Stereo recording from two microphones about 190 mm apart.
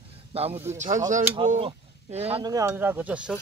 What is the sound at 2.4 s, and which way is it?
Speech, 20° right (ahead or behind).